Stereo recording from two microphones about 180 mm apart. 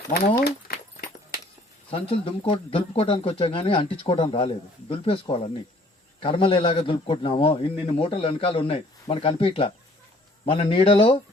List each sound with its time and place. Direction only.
0.1 s speech: 55° left (ahead or behind)
1.9 s a man's voice: 30° left (ahead or behind)